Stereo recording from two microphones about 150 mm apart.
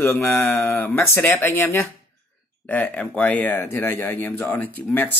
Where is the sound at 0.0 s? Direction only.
15° left (ahead or behind).